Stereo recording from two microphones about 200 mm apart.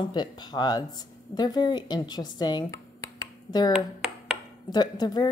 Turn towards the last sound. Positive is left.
turn(degrees=20)  # may be behind; listen again after turning